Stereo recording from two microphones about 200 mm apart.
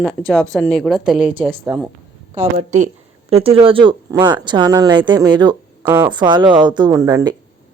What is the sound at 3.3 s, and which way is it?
Speech, 30° right (ahead or behind).